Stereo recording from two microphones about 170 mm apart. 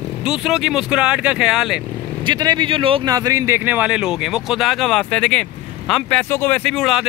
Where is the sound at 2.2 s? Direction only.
25° right (ahead or behind).